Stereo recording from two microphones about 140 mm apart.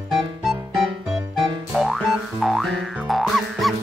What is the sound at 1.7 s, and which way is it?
Music, centre (ahead or behind).